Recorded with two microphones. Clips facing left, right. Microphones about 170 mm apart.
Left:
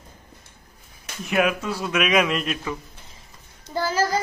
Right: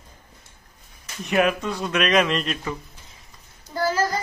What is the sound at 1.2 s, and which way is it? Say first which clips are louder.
Speech: right 1 dB; centre (ahead or behind).